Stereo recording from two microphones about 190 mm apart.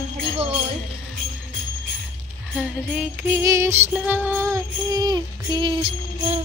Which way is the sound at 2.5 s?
5° right (ahead or behind).